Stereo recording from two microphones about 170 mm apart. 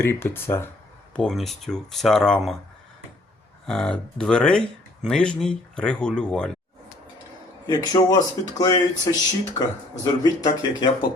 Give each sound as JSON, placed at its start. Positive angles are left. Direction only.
{"t": 0.0, "sound": "speech", "side_deg": 15}
{"t": 1.1, "sound": "speech", "side_deg": 5}
{"t": 3.7, "sound": "speech", "side_deg": 5}
{"t": 7.7, "sound": "speech", "side_deg": 20}